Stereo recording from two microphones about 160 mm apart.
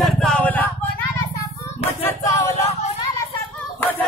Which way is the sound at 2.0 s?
20° left (ahead or behind).